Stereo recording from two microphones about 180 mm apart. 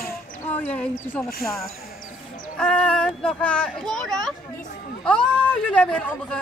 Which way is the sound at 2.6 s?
5° left (ahead or behind).